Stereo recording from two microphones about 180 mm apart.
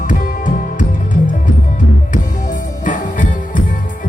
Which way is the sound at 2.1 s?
45° left (ahead or behind).